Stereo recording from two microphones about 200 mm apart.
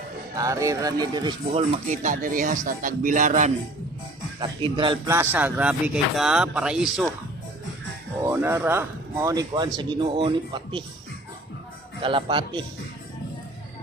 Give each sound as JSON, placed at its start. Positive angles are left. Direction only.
{"t": 0.3, "sound": "speech", "side_deg": -15}
{"t": 4.4, "sound": "speech", "side_deg": -25}
{"t": 5.0, "sound": "speech", "side_deg": -10}
{"t": 8.2, "sound": "speech", "side_deg": -10}
{"t": 12.0, "sound": "speech", "side_deg": -25}